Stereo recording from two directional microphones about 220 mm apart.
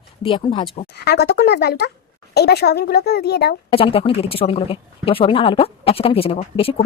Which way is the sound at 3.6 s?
25° left (ahead or behind).